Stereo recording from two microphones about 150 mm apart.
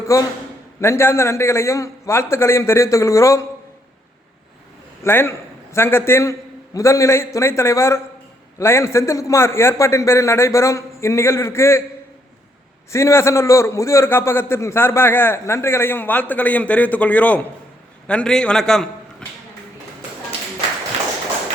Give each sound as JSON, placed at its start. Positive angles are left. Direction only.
{"t": 0.1, "sound": "a man's voice", "side_deg": 20}
{"t": 5.0, "sound": "a man's voice", "side_deg": 15}
{"t": 12.9, "sound": "a man's voice", "side_deg": 20}